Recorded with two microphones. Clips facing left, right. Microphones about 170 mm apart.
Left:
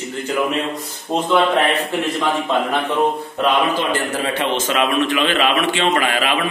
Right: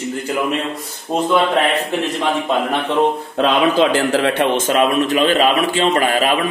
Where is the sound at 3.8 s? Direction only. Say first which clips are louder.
Right 6 dB; 80° right.